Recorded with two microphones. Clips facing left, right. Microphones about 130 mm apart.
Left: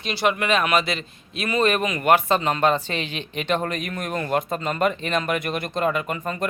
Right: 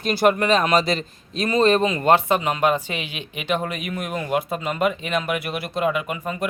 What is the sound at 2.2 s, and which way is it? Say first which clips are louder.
Speech: even; 15° right (ahead or behind).